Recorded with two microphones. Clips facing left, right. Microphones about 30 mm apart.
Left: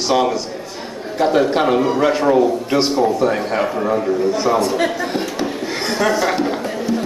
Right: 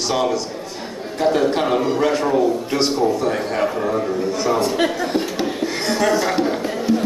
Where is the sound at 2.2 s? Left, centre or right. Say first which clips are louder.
Left 3 dB; left.